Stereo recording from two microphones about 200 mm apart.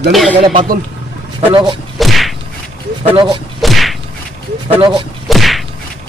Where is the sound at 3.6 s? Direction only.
Centre (ahead or behind).